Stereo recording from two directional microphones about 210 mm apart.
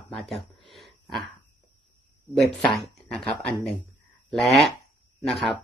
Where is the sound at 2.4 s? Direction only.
Centre (ahead or behind).